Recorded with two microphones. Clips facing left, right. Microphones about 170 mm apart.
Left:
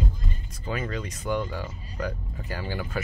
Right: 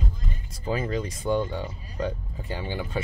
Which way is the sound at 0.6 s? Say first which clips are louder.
Right 4 dB; 30° right (ahead or behind).